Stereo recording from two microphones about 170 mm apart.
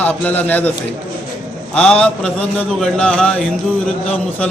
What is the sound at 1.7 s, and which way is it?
A man's voice, 5° left (ahead or behind).